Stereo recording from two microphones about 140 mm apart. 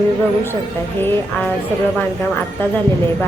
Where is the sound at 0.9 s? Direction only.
15° left (ahead or behind).